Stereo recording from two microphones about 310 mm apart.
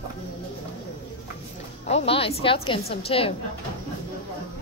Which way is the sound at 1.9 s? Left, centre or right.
Centre.